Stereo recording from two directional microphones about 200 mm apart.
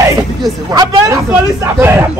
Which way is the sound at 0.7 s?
15° right (ahead or behind).